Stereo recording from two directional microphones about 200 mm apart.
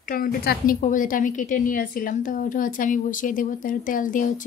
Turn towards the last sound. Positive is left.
turn(degrees=40)  # may be behind; listen again after turning